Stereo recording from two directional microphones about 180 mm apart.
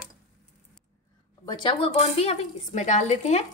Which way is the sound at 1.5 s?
25° left (ahead or behind).